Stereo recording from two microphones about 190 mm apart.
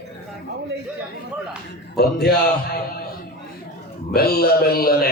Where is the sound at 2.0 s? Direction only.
55° left (ahead or behind).